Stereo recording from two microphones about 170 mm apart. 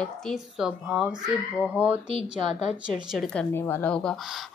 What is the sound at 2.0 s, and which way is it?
Speech, 30° right (ahead or behind).